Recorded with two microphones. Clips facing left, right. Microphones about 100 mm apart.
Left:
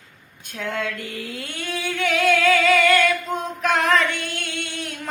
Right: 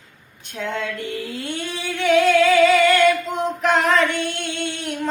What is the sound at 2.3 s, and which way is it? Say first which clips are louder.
Music: right 3 dB; 20° right (ahead or behind).